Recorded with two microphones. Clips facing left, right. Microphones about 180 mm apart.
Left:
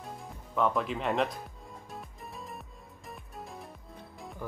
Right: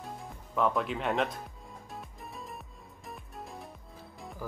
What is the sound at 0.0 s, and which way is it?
Music, centre (ahead or behind).